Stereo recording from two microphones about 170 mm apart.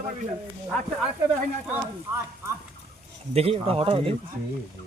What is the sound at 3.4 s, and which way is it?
Speech, 35° right (ahead or behind).